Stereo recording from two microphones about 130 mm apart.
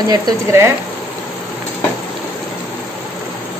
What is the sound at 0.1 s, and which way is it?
Speech, 20° right (ahead or behind).